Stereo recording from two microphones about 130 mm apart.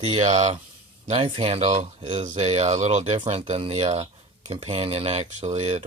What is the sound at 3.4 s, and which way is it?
Speech, 45° right (ahead or behind).